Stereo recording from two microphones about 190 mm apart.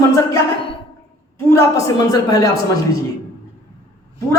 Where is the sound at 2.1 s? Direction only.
20° left (ahead or behind).